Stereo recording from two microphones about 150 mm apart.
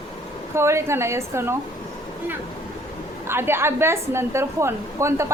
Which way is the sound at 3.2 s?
15° right (ahead or behind).